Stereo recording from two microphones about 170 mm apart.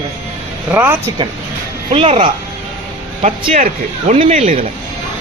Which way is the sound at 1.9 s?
35° right (ahead or behind).